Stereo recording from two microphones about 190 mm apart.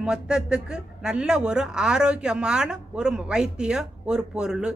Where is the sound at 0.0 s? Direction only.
5° right (ahead or behind).